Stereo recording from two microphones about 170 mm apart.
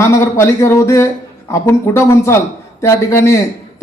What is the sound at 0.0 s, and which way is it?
A man's voice, 15° left (ahead or behind).